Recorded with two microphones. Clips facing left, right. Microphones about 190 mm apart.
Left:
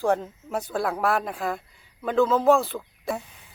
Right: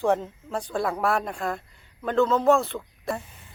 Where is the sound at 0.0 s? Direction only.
Centre (ahead or behind).